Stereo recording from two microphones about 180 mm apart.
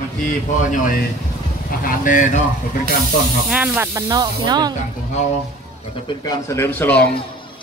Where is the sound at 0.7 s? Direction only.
50° left (ahead or behind).